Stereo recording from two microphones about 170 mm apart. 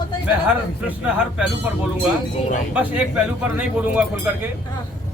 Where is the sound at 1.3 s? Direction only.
5° right (ahead or behind).